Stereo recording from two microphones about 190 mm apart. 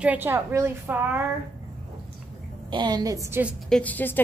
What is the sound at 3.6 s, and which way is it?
Speech, 5° left (ahead or behind).